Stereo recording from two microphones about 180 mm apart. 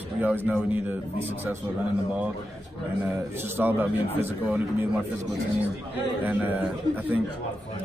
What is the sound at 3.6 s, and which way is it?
A man's voice, 10° right (ahead or behind).